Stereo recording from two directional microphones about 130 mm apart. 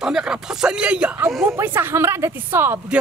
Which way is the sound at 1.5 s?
20° right (ahead or behind).